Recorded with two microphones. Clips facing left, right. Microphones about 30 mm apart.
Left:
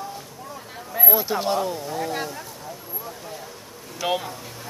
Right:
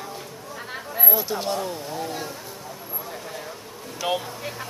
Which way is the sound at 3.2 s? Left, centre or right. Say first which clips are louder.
Right 1 dB; centre.